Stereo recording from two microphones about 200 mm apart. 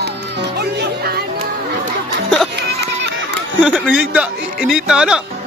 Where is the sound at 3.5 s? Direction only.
5° right (ahead or behind).